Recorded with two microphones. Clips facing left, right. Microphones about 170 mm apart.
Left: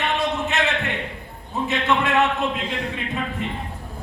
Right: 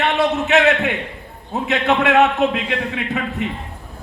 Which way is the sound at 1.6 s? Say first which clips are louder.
Right 4 dB; 65° right (ahead or behind).